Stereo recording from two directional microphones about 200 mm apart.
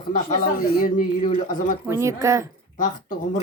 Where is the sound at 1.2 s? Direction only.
40° left (ahead or behind).